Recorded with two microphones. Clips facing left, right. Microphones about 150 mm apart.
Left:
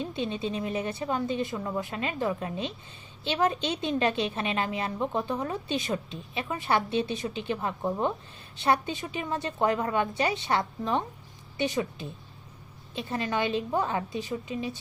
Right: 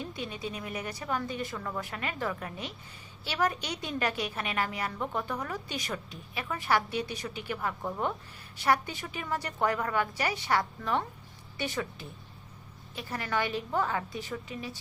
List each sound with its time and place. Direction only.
0.0 s a woman's voice: 25° left (ahead or behind)